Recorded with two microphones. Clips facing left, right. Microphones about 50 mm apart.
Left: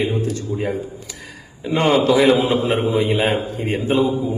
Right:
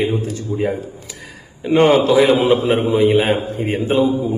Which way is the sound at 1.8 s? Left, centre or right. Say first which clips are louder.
Right 3 dB; centre.